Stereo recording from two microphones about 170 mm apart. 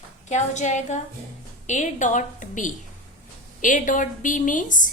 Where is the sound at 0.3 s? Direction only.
45° left (ahead or behind).